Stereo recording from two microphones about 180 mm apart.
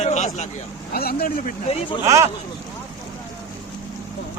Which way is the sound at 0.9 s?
55° left (ahead or behind).